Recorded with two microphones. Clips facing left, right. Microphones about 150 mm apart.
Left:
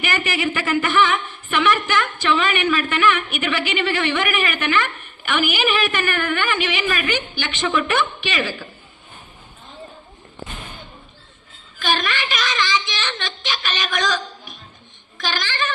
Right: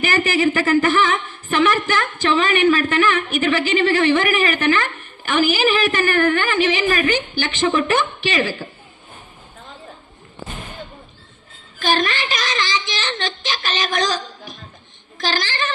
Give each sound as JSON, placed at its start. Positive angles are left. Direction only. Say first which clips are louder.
{"t": 0.0, "sound": "speech", "louder": "right 5 dB", "side_deg": -40}
{"t": 11.8, "sound": "speech", "louder": "right 3 dB", "side_deg": -40}